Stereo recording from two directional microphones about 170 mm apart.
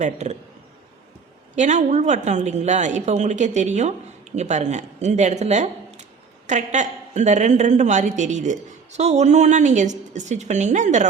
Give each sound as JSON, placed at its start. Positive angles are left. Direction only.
{"t": 0.0, "sound": "a woman's voice", "side_deg": -45}
{"t": 1.5, "sound": "a woman's voice", "side_deg": -45}